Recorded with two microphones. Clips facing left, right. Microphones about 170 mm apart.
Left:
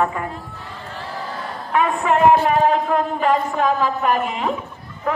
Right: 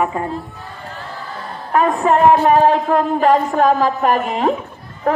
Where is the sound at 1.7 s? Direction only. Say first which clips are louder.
Right 4 dB; 40° right (ahead or behind).